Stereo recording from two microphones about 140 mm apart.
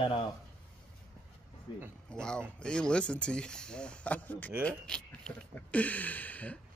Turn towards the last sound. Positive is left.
turn(degrees=10)  # may be behind; listen again after turning